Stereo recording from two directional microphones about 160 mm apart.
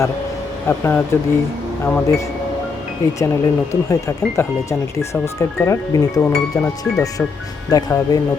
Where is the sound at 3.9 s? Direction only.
20° left (ahead or behind).